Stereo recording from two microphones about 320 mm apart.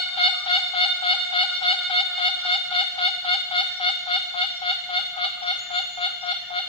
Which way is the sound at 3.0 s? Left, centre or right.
Centre.